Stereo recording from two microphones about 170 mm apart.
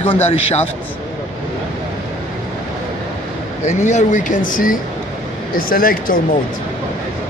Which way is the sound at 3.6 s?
45° left (ahead or behind).